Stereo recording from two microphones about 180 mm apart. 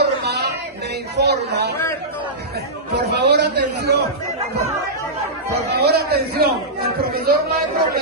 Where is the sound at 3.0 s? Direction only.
65° right (ahead or behind).